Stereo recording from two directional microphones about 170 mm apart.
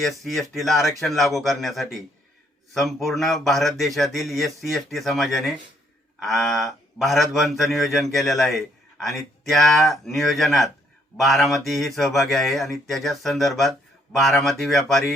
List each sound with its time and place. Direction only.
0.0 s a man's voice: centre (ahead or behind)